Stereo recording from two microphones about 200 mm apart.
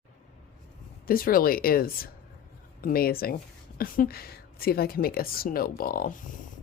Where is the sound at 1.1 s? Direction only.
45° left (ahead or behind).